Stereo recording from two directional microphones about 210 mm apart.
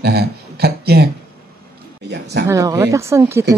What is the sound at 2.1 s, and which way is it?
Speech, 50° right (ahead or behind).